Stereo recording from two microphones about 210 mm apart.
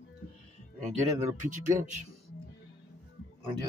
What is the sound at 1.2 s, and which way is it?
Speech, 35° right (ahead or behind).